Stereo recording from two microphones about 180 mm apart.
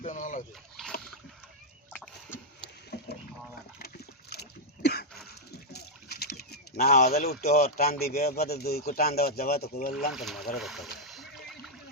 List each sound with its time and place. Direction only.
0.0 s a sound: 45° left (ahead or behind)
0.8 s boat: centre (ahead or behind)
2.9 s boat: 65° left (ahead or behind)
3.8 s a sound: 60° left (ahead or behind)
7.8 s speech: 60° left (ahead or behind)
10.1 s speech: centre (ahead or behind)
11.0 s splash: centre (ahead or behind)